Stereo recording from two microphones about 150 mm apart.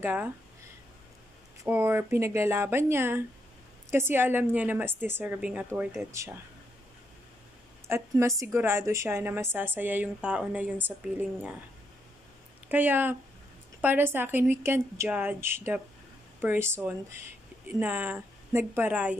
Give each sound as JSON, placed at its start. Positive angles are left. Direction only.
{"t": 0.0, "sound": "a woman's voice", "side_deg": -10}
{"t": 1.6, "sound": "a woman's voice", "side_deg": -15}
{"t": 7.9, "sound": "a woman's voice", "side_deg": -20}
{"t": 12.6, "sound": "a woman's voice", "side_deg": -10}